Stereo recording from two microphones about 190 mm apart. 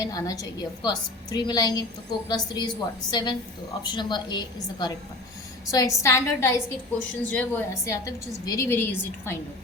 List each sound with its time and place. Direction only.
0.0 s a woman's voice: 20° left (ahead or behind)